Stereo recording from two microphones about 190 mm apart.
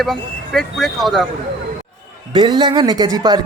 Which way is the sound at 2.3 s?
25° right (ahead or behind).